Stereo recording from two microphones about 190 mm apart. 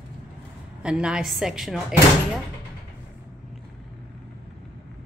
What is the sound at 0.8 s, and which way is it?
A woman's voice, 5° right (ahead or behind).